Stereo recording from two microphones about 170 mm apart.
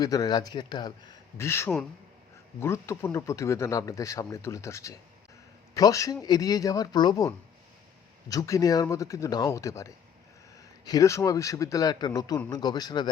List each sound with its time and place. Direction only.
0.0 s speech: 20° left (ahead or behind)